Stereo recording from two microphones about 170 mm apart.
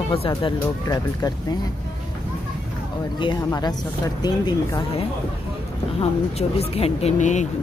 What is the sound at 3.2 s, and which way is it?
Speech, 25° left (ahead or behind).